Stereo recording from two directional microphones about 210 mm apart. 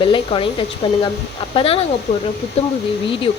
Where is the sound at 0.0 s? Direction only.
25° left (ahead or behind).